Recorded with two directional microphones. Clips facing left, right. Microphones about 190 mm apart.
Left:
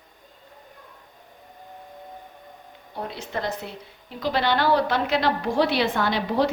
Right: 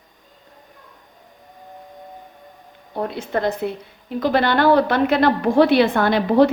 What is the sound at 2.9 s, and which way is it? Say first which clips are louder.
A woman's voice: right 8 dB; 55° right (ahead or behind).